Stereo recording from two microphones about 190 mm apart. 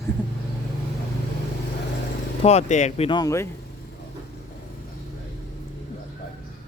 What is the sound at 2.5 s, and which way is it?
Speech, 35° left (ahead or behind).